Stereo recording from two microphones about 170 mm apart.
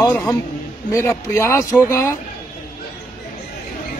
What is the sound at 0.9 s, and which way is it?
Speech, 15° left (ahead or behind).